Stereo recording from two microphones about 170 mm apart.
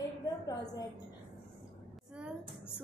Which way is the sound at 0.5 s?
20° left (ahead or behind).